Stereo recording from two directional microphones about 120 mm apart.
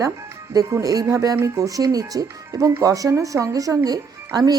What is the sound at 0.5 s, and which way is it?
Speech, 30° right (ahead or behind).